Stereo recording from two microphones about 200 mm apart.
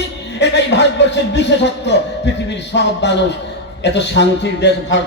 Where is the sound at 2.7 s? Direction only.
60° left (ahead or behind).